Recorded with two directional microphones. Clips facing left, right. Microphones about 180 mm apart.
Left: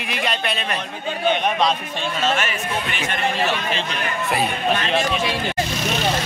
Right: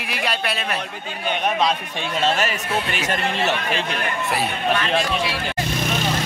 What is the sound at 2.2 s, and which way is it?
Speech, 35° right (ahead or behind).